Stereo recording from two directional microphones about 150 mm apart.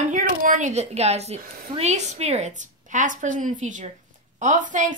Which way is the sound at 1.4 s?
70° right (ahead or behind).